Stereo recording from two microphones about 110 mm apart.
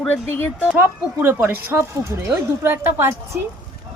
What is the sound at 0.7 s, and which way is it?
Speech, 15° right (ahead or behind).